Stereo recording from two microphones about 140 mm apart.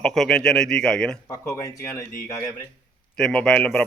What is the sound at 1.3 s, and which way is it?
Speech, 20° left (ahead or behind).